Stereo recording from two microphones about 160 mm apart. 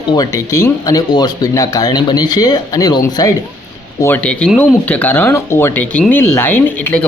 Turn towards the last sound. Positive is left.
turn(degrees=10)  # may be behind; listen again after turning